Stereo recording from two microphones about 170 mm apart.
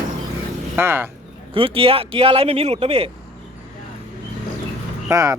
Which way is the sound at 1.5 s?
35° right (ahead or behind).